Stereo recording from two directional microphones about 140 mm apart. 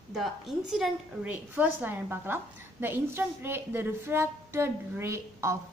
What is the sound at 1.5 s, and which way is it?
A woman's voice, 15° right (ahead or behind).